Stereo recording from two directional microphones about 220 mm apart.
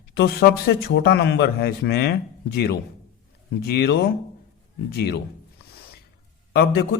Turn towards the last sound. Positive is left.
turn(degrees=50)  # may be behind; listen again after turning